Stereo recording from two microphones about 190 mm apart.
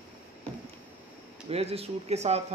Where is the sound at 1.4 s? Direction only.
30° right (ahead or behind).